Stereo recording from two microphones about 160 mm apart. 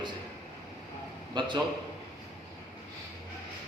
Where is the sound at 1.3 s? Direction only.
30° right (ahead or behind).